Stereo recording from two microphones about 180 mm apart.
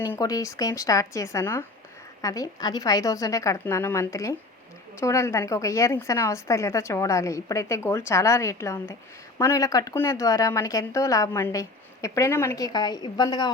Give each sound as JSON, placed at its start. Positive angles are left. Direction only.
{"t": 0.0, "sound": "a woman's voice", "side_deg": 15}